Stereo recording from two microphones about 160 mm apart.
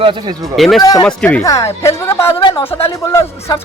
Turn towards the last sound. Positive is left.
turn(degrees=25)  # may be behind; listen again after turning